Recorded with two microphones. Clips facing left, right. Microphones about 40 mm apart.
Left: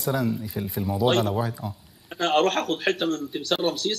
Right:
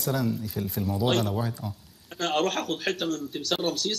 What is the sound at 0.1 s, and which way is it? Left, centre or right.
A man's voice, centre.